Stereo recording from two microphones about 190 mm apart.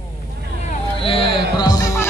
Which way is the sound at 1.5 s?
20° left (ahead or behind).